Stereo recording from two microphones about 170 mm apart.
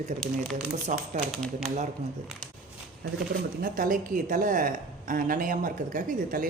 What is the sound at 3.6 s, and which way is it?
A woman's voice, 55° right (ahead or behind).